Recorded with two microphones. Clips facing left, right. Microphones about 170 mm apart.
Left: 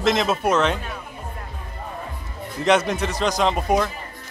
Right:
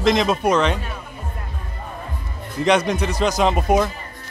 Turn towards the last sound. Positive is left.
turn(degrees=-5)  # may be behind; listen again after turning